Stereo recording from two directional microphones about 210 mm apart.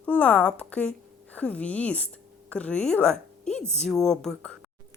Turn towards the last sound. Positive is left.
turn(degrees=5)  # may be behind; listen again after turning